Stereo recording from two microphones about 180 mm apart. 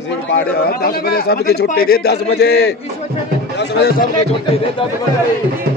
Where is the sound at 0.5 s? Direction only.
55° left (ahead or behind).